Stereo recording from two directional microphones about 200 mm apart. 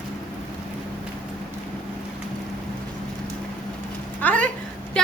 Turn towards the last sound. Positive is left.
turn(degrees=5)  # may be behind; listen again after turning